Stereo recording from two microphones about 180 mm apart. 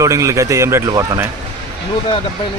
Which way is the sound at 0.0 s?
15° right (ahead or behind).